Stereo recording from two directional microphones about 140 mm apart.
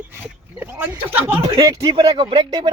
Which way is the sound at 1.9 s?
35° right (ahead or behind).